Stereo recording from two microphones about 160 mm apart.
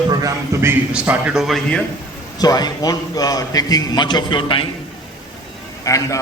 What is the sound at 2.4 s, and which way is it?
A man's voice, 25° left (ahead or behind).